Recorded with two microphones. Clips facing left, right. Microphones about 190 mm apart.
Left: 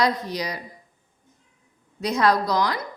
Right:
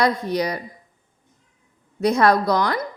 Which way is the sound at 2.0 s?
55° right (ahead or behind).